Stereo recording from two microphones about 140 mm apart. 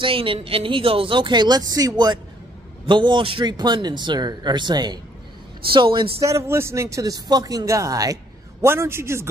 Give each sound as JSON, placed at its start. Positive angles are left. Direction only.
{"t": 0.0, "sound": "speech", "side_deg": -40}
{"t": 6.2, "sound": "speech", "side_deg": -20}